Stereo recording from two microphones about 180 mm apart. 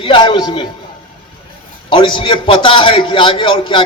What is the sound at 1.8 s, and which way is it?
A man's voice, 25° left (ahead or behind).